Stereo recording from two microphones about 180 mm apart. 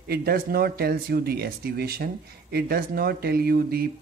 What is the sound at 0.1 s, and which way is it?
Speech, 60° right (ahead or behind).